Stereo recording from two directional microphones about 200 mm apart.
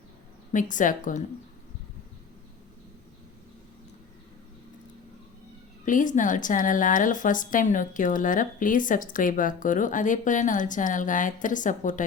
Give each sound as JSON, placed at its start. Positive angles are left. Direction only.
{"t": 0.5, "sound": "a woman's voice", "side_deg": 40}
{"t": 5.8, "sound": "a woman's voice", "side_deg": 40}